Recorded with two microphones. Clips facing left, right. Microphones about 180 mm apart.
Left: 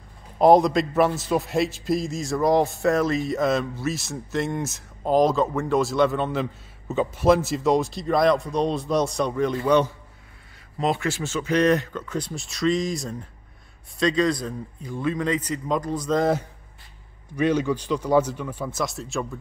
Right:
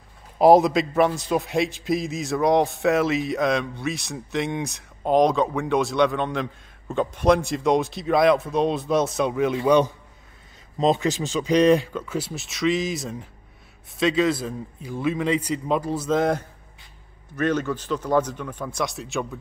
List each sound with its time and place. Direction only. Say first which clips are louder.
0.4 s speech: right 1 dB; 5° right (ahead or behind)